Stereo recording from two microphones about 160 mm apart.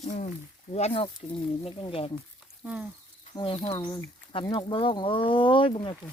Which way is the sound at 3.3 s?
30° left (ahead or behind).